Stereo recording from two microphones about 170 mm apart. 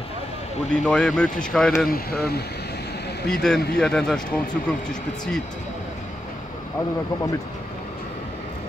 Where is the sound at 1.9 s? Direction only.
65° left (ahead or behind).